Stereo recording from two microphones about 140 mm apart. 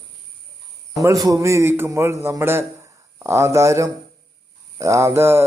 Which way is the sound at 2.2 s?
20° right (ahead or behind).